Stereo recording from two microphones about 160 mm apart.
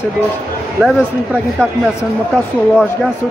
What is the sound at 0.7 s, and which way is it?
Speech, 5° right (ahead or behind).